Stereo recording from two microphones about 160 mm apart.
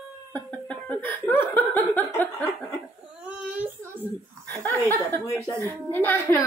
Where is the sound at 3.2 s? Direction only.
10° right (ahead or behind).